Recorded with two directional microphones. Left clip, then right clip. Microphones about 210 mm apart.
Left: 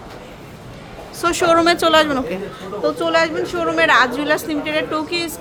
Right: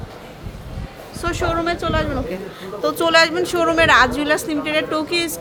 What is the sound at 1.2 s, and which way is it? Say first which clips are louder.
A woman's voice: left 7 dB; 20° left (ahead or behind).